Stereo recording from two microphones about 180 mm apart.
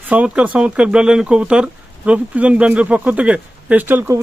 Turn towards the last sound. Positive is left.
turn(degrees=-15)  # may be behind; listen again after turning